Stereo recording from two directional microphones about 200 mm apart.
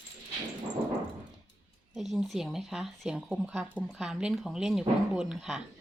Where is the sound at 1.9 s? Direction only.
Centre (ahead or behind).